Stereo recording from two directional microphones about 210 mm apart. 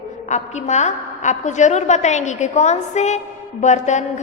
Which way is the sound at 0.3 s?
35° left (ahead or behind).